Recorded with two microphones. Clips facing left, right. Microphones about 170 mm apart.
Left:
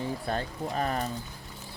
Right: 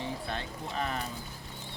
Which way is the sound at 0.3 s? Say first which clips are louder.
Left 6 dB; 40° left (ahead or behind).